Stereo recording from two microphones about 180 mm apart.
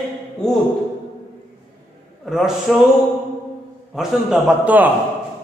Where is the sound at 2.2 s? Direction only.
Centre (ahead or behind).